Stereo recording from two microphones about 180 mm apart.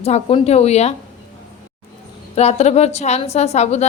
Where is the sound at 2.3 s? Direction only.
40° left (ahead or behind).